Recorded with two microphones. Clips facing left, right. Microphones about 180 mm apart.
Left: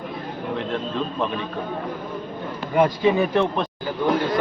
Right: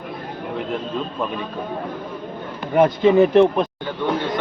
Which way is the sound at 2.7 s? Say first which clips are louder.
Right 4 dB; 25° right (ahead or behind).